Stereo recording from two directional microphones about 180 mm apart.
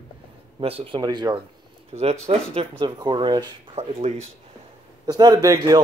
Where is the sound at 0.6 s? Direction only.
30° right (ahead or behind).